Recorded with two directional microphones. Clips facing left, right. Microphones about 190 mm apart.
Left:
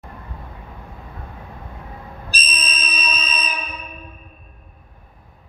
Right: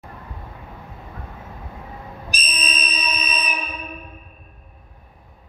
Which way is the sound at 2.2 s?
15° right (ahead or behind).